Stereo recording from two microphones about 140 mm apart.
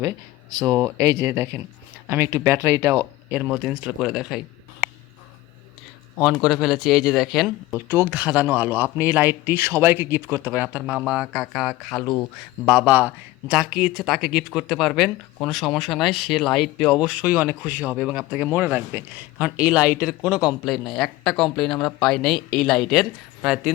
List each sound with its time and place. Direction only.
0.5 s speech: 25° right (ahead or behind); by 4.4 s 5° right (ahead or behind)
6.4 s speech: 5° right (ahead or behind)
7.9 s speech: 15° right (ahead or behind); by 12.2 s 5° left (ahead or behind)
12.6 s speech: 5° right (ahead or behind)